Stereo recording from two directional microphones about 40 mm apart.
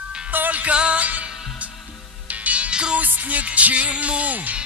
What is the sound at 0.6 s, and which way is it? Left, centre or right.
Music, right.